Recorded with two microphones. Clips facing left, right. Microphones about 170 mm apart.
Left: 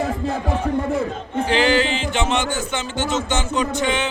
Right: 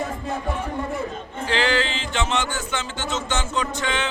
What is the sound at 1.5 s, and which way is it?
Music, 15° left (ahead or behind).